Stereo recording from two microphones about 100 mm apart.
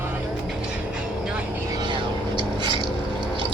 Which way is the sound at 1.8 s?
50° right (ahead or behind).